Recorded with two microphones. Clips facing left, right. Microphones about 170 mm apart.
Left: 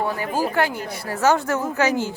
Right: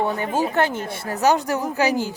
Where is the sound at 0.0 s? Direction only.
25° right (ahead or behind).